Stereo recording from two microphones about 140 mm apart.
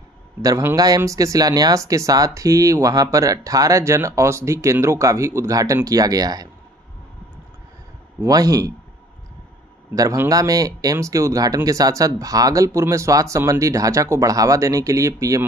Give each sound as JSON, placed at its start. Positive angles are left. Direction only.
{"t": 0.4, "sound": "speech", "side_deg": -20}
{"t": 8.2, "sound": "speech", "side_deg": -25}
{"t": 9.9, "sound": "speech", "side_deg": -25}